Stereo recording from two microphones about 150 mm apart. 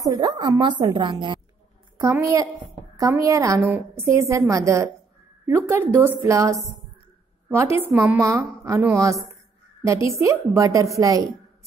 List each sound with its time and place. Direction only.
0.1 s a woman's voice: 30° right (ahead or behind)
2.0 s a woman's voice: 20° right (ahead or behind)
8.3 s a woman's voice: 20° right (ahead or behind)